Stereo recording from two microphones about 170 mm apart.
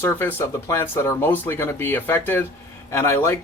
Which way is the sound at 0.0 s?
15° left (ahead or behind).